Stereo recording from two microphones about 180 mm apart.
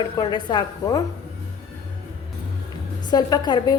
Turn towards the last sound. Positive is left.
turn(degrees=20)  # may be behind; listen again after turning